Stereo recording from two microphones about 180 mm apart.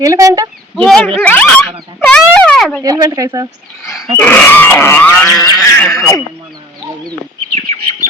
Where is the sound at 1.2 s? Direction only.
10° left (ahead or behind).